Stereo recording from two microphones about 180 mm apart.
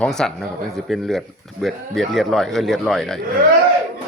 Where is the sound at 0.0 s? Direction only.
5° left (ahead or behind).